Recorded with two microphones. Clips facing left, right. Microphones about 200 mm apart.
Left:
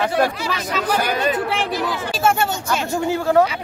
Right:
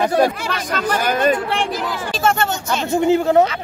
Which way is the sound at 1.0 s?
50° right (ahead or behind).